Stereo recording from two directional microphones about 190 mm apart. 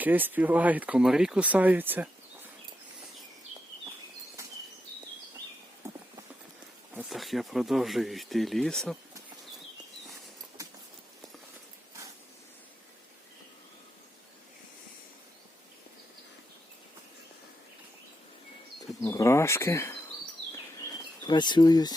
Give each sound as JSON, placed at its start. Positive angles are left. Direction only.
{"t": 0.0, "sound": "speech", "side_deg": -10}
{"t": 5.8, "sound": "clip-clop", "side_deg": -15}
{"t": 6.9, "sound": "speech", "side_deg": 0}
{"t": 10.6, "sound": "a sound", "side_deg": -15}
{"t": 19.0, "sound": "speech", "side_deg": 15}
{"t": 21.2, "sound": "speech", "side_deg": 25}